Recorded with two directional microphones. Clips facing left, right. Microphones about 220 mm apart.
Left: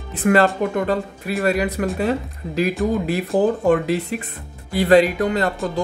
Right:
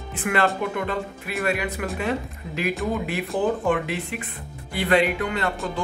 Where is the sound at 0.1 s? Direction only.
40° left (ahead or behind).